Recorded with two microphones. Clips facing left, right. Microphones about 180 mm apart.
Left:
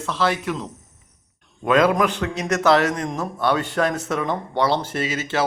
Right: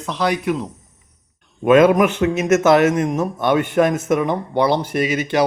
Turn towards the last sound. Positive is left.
turn(degrees=-15)  # may be behind; listen again after turning